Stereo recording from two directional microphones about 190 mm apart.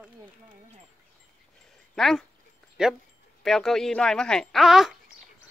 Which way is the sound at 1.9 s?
Centre (ahead or behind).